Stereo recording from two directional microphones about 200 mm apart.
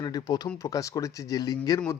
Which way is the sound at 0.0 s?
20° left (ahead or behind).